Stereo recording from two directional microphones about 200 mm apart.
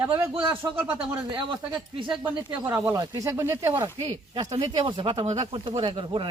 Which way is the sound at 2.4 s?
10° right (ahead or behind).